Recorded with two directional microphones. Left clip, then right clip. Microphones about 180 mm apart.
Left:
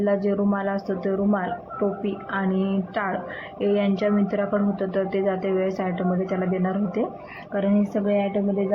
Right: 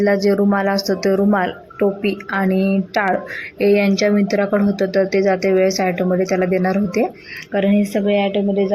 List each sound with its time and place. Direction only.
0.0 s a woman's voice: 40° right (ahead or behind)